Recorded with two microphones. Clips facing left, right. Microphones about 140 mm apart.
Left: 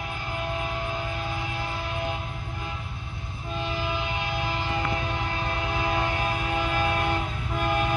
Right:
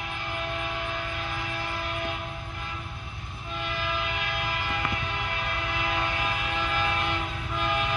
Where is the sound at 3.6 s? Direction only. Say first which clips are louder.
Left 2 dB; 30° left (ahead or behind).